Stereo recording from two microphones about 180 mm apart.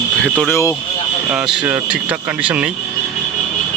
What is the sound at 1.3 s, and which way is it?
Speech, 5° right (ahead or behind).